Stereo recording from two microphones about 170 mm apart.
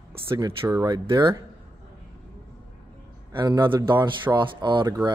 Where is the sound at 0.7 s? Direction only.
20° right (ahead or behind).